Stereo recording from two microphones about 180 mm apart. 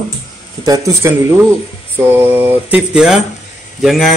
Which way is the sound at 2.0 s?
10° right (ahead or behind).